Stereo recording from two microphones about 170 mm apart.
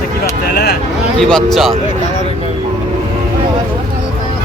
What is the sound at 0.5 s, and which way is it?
Speech, 75° left (ahead or behind).